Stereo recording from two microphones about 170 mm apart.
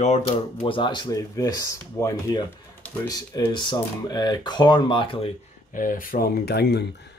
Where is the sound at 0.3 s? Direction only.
30° left (ahead or behind).